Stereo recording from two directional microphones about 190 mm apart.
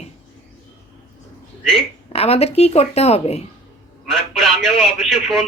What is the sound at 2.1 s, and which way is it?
A woman's voice, 30° left (ahead or behind).